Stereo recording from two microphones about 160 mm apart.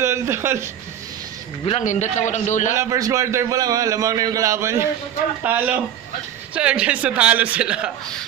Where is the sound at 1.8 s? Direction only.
50° left (ahead or behind).